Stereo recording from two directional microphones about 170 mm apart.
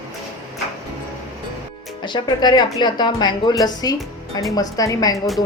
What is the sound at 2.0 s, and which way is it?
A woman's voice, 25° left (ahead or behind).